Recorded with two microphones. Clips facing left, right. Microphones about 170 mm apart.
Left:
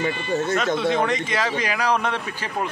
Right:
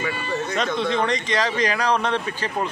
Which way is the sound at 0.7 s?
5° left (ahead or behind).